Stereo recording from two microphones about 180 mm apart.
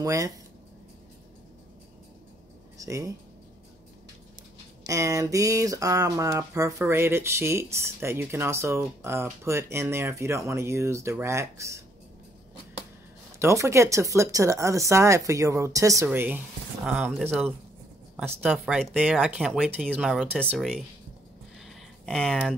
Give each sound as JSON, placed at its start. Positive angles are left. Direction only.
{"t": 0.0, "sound": "speech", "side_deg": -20}
{"t": 2.8, "sound": "speech", "side_deg": -20}
{"t": 4.8, "sound": "speech", "side_deg": -20}
{"t": 13.4, "sound": "speech", "side_deg": -15}
{"t": 21.5, "sound": "a sound", "side_deg": 0}